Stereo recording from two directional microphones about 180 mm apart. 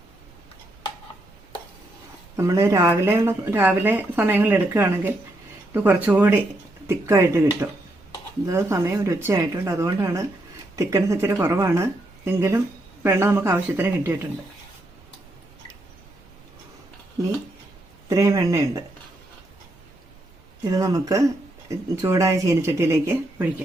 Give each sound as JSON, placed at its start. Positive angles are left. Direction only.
{"t": 2.3, "sound": "speech", "side_deg": -15}
{"t": 18.1, "sound": "speech", "side_deg": -20}
{"t": 20.7, "sound": "speech", "side_deg": -20}